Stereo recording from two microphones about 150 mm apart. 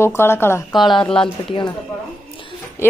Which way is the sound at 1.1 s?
35° left (ahead or behind).